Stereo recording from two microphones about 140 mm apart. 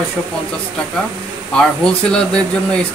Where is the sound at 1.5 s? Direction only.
5° left (ahead or behind).